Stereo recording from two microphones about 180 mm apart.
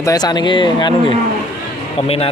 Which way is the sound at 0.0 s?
20° left (ahead or behind).